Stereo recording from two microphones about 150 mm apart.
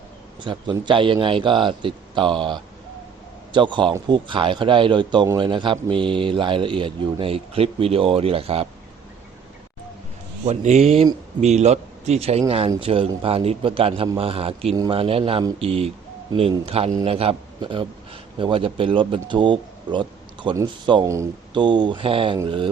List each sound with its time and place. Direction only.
0.4 s speech: 30° right (ahead or behind)
10.4 s a man's voice: 50° right (ahead or behind); by 22.7 s 35° right (ahead or behind)